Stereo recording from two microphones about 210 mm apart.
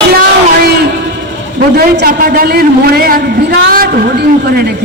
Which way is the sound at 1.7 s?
45° right (ahead or behind).